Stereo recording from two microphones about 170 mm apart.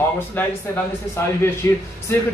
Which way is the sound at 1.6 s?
15° left (ahead or behind).